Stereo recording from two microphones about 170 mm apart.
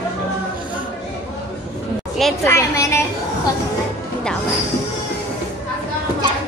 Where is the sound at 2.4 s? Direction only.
15° left (ahead or behind).